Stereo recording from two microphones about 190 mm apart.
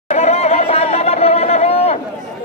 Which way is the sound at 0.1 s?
35° left (ahead or behind).